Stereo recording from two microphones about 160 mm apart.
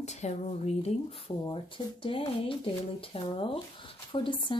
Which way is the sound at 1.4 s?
35° left (ahead or behind).